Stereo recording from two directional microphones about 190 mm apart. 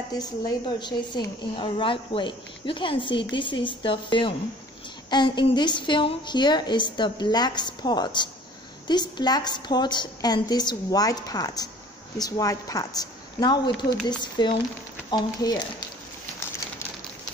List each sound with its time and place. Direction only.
0.1 s a woman's voice: 20° left (ahead or behind)